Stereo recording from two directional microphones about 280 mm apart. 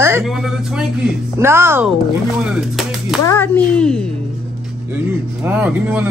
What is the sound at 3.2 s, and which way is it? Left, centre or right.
Speech, centre.